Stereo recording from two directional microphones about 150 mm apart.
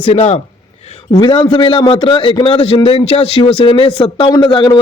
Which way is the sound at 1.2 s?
30° left (ahead or behind).